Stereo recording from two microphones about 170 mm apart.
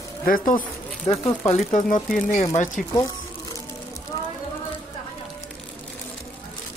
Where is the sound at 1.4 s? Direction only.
45° left (ahead or behind).